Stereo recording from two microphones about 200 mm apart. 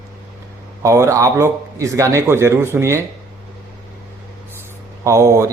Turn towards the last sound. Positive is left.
turn(degrees=-15)  # may be behind; listen again after turning